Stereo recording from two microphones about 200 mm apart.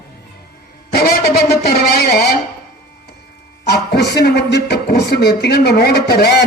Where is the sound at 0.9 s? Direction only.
55° left (ahead or behind).